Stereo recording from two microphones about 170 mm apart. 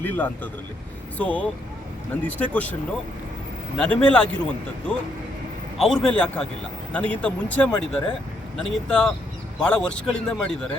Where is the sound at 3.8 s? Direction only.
5° left (ahead or behind).